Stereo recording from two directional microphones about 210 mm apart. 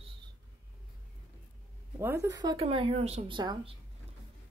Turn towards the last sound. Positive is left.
turn(degrees=-20)  # may be behind; listen again after turning